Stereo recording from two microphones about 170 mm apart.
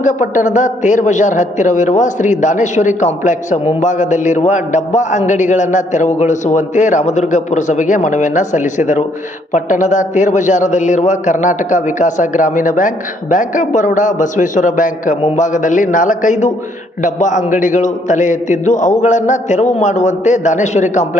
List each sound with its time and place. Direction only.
0.0 s a man's voice: 45° left (ahead or behind)